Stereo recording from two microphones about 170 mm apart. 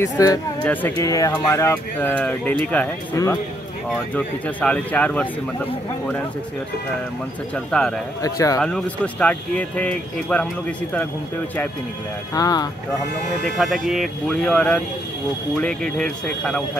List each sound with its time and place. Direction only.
0.0 s speech: 20° left (ahead or behind)
7.5 s speech: 5° left (ahead or behind)
8.2 s speech: 20° left (ahead or behind)
8.6 s speech: 5° left (ahead or behind)
12.4 s speech: 20° left (ahead or behind)
13.8 s speech: centre (ahead or behind)